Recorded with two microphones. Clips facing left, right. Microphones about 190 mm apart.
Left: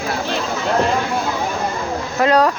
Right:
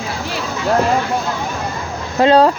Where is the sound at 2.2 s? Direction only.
30° right (ahead or behind).